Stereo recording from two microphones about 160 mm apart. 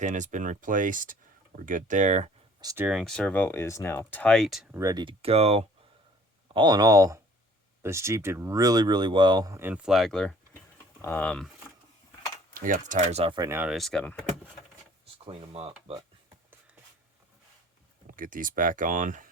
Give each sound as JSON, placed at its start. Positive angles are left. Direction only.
{"t": 0.0, "sound": "speech", "side_deg": -50}
{"t": 2.6, "sound": "speech", "side_deg": -20}
{"t": 2.8, "sound": "speech", "side_deg": 0}
{"t": 4.7, "sound": "speech", "side_deg": -20}
{"t": 6.5, "sound": "speech", "side_deg": -30}
{"t": 12.5, "sound": "speech", "side_deg": -55}
{"t": 13.3, "sound": "speech", "side_deg": -20}
{"t": 13.6, "sound": "speech", "side_deg": 0}
{"t": 15.2, "sound": "speech", "side_deg": -35}
{"t": 18.2, "sound": "speech", "side_deg": -60}